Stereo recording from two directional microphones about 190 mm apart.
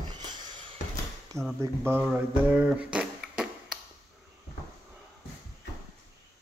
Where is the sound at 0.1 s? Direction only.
25° right (ahead or behind).